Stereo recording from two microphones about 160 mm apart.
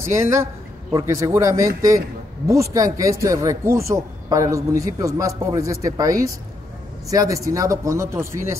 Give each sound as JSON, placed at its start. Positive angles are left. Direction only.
{"t": 0.1, "sound": "a man's voice", "side_deg": -15}